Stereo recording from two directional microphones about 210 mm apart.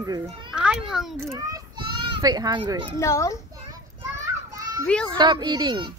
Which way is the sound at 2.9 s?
15° left (ahead or behind).